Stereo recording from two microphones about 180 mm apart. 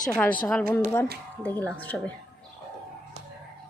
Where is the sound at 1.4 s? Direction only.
10° left (ahead or behind).